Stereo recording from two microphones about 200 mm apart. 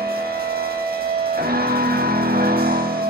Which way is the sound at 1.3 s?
50° right (ahead or behind).